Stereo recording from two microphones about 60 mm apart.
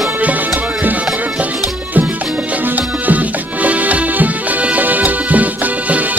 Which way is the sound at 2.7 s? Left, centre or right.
Right.